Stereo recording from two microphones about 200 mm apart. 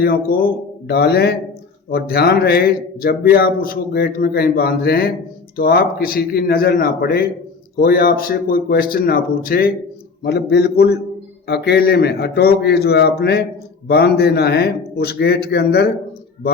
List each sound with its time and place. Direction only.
0.0 s a man's voice: 45° left (ahead or behind)